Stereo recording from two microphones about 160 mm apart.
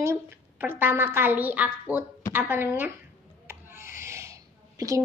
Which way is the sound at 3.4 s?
15° right (ahead or behind).